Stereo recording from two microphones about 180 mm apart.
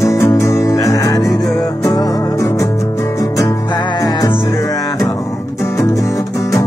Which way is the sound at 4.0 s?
20° left (ahead or behind).